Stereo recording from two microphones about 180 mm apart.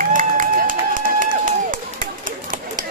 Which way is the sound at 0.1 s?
45° right (ahead or behind).